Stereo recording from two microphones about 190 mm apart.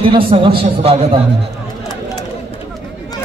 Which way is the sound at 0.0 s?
30° right (ahead or behind).